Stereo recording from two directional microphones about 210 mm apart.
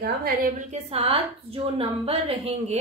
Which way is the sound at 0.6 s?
30° right (ahead or behind).